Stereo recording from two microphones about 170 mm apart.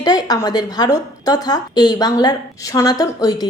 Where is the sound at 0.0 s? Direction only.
20° left (ahead or behind).